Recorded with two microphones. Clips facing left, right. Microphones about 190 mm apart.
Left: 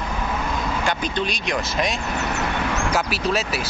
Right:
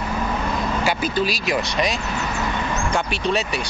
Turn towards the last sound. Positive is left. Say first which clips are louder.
# right 1 dB
turn(degrees=0)  # may be behind; listen again after turning